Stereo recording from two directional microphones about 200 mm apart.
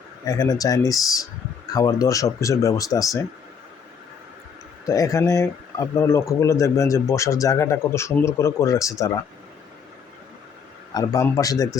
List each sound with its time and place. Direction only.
0.3 s speech: 15° left (ahead or behind)
4.9 s speech: 15° left (ahead or behind)
10.9 s speech: 15° left (ahead or behind)